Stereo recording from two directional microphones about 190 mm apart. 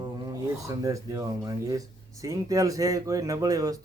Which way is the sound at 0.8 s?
15° right (ahead or behind).